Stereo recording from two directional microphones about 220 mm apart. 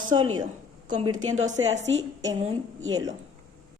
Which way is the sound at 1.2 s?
65° right (ahead or behind).